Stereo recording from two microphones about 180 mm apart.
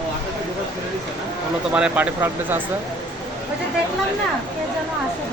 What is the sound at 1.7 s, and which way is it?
Speech, 10° right (ahead or behind).